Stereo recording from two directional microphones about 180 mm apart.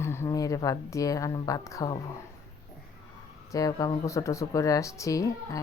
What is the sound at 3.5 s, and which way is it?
A woman's voice, 20° left (ahead or behind).